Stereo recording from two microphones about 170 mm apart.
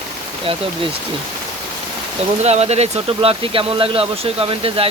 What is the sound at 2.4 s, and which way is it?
Speech, 40° right (ahead or behind).